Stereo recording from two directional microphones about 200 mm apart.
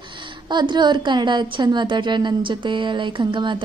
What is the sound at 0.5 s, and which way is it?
Speech, 20° right (ahead or behind).